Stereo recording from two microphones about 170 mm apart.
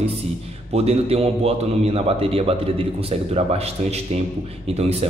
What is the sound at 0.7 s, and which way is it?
A man's voice, 35° right (ahead or behind).